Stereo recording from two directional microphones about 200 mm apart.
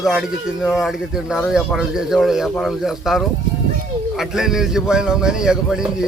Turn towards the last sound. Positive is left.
turn(degrees=-5)  # may be behind; listen again after turning